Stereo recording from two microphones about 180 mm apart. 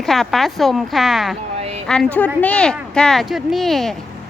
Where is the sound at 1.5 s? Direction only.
35° right (ahead or behind).